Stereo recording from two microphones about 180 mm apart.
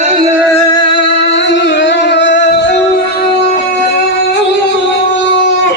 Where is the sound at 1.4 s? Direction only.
80° left.